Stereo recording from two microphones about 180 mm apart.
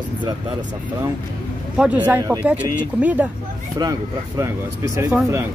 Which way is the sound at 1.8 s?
5° right (ahead or behind).